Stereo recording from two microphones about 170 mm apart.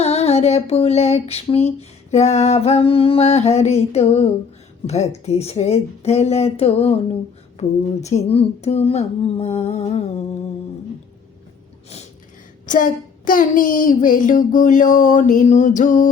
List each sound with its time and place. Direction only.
0.0 s female singing: 40° left (ahead or behind)
8.0 s female singing: 40° left (ahead or behind)
12.6 s child singing: 50° left (ahead or behind)